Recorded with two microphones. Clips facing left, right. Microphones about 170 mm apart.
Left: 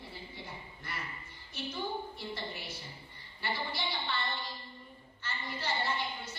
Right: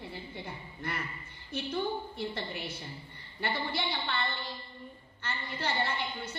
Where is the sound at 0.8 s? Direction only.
60° right (ahead or behind).